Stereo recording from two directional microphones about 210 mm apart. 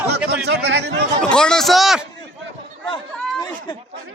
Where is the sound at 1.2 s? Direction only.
5° left (ahead or behind).